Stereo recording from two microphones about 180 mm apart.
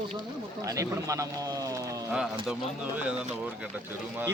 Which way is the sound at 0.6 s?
20° right (ahead or behind).